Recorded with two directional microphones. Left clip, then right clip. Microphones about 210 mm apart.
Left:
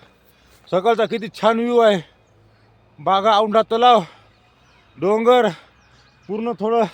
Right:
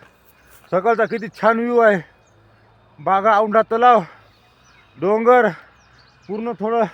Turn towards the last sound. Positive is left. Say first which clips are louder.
# left 1 dB
turn(degrees=5)  # may be behind; listen again after turning